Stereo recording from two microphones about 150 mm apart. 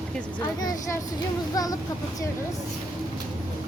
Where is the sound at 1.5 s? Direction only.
25° left (ahead or behind).